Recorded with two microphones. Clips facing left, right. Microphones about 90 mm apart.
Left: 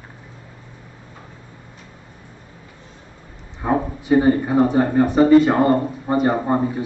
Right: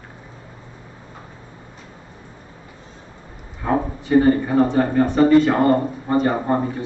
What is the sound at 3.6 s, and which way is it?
A man's voice, 15° left (ahead or behind).